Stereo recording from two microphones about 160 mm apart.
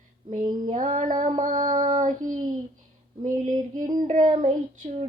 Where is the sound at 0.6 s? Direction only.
50° right (ahead or behind).